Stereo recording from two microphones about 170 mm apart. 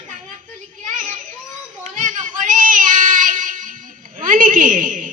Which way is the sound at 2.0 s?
50° right (ahead or behind).